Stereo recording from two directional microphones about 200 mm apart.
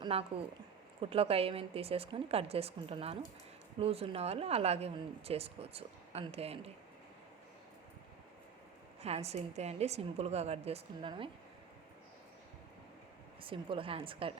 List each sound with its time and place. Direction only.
0.0 s a woman's voice: 30° right (ahead or behind)
9.0 s a woman's voice: 30° right (ahead or behind)
13.4 s a woman's voice: 25° right (ahead or behind)